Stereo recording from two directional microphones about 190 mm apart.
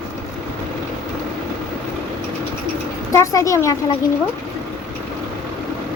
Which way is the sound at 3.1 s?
15° left (ahead or behind).